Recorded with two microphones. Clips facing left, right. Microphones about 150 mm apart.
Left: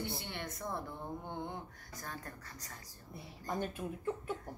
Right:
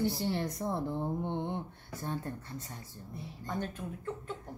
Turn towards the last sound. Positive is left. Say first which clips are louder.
# left 1 dB
turn(degrees=10)  # may be behind; listen again after turning